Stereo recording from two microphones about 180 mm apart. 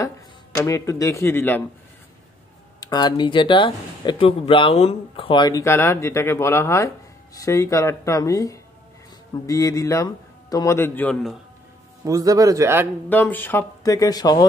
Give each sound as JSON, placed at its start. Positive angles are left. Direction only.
{"t": 0.6, "sound": "a man's voice", "side_deg": 15}
{"t": 2.8, "sound": "a man's voice", "side_deg": 20}
{"t": 12.0, "sound": "a man's voice", "side_deg": -20}
{"t": 13.1, "sound": "a man's voice", "side_deg": 10}